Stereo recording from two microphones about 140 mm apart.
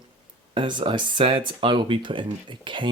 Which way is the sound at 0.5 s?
35° right (ahead or behind).